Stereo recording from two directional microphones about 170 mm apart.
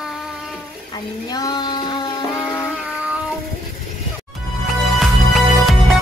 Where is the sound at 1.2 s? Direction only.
20° left (ahead or behind).